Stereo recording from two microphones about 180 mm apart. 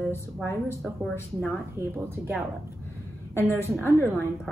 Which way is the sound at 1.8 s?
15° right (ahead or behind).